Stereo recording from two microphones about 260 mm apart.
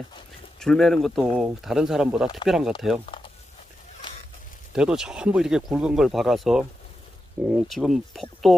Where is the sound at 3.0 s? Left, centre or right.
Centre.